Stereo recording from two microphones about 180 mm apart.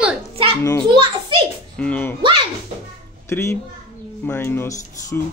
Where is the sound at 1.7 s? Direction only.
5° left (ahead or behind).